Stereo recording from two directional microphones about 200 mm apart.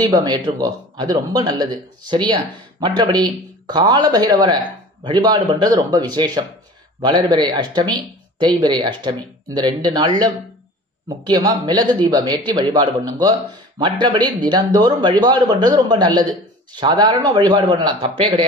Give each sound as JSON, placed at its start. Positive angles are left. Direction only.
{"t": 0.1, "sound": "speech", "side_deg": -20}